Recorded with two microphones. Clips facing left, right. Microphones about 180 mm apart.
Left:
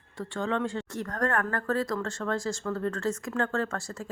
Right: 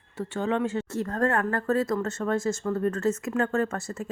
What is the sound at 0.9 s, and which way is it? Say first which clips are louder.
Speech: right 4 dB; 25° right (ahead or behind).